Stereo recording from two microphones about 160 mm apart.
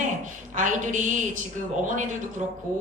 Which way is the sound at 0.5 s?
55° right (ahead or behind).